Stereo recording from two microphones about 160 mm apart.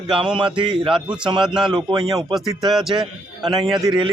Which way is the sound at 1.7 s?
25° right (ahead or behind).